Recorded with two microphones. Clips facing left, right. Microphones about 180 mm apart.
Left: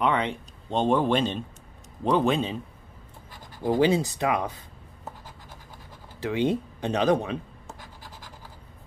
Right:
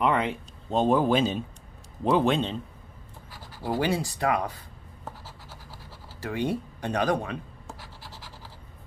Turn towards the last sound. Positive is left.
turn(degrees=20)  # may be behind; listen again after turning